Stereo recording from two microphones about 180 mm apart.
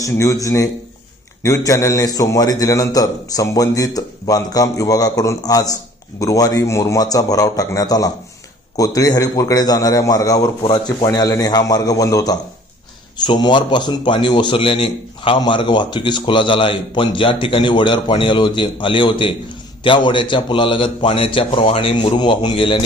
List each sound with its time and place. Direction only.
0.0 s a man's voice: 20° left (ahead or behind)